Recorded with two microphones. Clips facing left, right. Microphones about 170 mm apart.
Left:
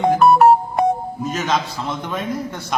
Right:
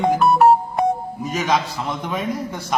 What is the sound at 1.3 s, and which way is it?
A man's voice, 10° right (ahead or behind).